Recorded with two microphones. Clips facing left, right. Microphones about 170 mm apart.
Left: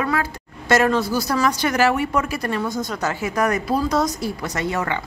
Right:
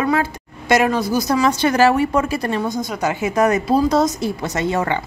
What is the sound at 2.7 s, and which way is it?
A woman's voice, 15° right (ahead or behind).